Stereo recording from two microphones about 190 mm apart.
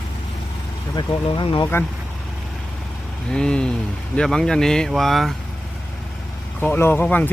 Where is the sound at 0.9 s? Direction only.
25° left (ahead or behind).